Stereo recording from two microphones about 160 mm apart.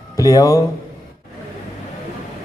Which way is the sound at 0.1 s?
20° left (ahead or behind).